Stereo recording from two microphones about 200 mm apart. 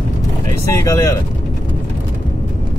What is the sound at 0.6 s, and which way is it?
Speech, 15° left (ahead or behind).